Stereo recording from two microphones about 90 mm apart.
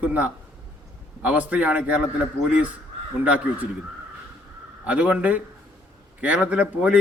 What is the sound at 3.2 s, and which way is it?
Speech, 20° right (ahead or behind).